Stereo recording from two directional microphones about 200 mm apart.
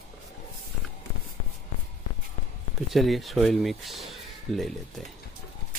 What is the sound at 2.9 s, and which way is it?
Speech, centre (ahead or behind).